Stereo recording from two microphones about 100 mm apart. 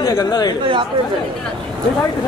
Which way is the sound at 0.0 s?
30° left (ahead or behind).